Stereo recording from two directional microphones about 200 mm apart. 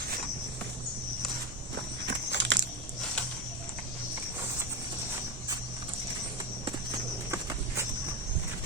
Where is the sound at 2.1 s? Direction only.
60° right (ahead or behind).